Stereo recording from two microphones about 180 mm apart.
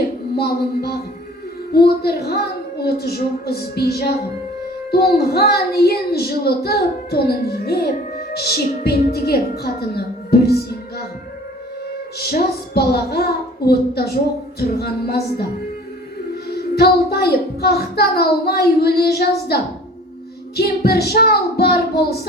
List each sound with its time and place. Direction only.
0.3 s a child's voice: 60° left (ahead or behind)
12.2 s a child's voice: 60° left (ahead or behind)
16.6 s a child's voice: 60° left (ahead or behind)
20.6 s a child's voice: 60° left (ahead or behind)